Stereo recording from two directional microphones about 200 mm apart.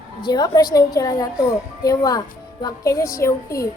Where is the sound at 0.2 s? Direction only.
20° left (ahead or behind).